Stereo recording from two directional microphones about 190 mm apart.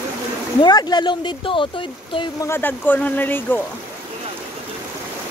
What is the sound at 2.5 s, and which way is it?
Speech, 10° left (ahead or behind).